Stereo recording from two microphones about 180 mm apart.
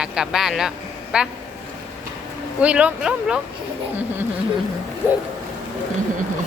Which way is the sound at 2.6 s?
5° right (ahead or behind).